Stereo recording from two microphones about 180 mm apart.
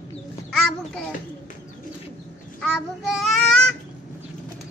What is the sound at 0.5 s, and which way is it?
Speech, 5° left (ahead or behind).